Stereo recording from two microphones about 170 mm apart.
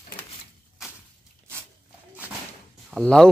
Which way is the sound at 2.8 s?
Centre (ahead or behind).